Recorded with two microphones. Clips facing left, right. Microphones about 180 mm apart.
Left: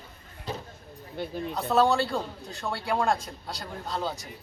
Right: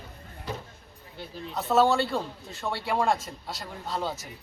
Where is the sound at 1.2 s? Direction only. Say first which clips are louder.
Left 8 dB; 55° left (ahead or behind).